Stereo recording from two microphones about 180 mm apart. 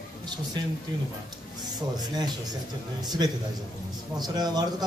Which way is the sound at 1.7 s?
20° right (ahead or behind).